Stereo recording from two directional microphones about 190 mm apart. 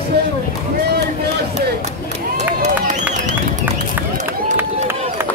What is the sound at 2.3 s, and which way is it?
Run, 40° right (ahead or behind).